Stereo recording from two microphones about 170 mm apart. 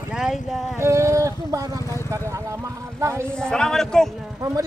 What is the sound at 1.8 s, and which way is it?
Vehicle, 15° left (ahead or behind).